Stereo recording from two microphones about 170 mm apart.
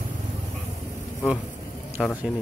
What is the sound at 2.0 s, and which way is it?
Mantra, centre (ahead or behind).